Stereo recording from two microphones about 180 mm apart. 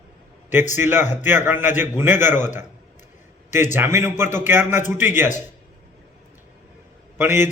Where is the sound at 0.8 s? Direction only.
10° right (ahead or behind).